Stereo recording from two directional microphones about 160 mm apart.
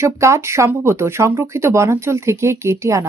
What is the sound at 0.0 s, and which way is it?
Speech, 15° right (ahead or behind).